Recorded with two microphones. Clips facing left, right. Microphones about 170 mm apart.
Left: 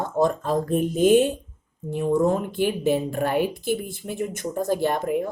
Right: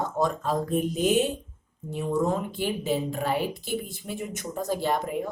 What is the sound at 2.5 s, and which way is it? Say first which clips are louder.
A woman's voice: left 5 dB; 55° left (ahead or behind).